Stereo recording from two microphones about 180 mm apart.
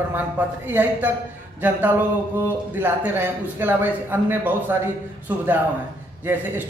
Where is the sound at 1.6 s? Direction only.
10° right (ahead or behind).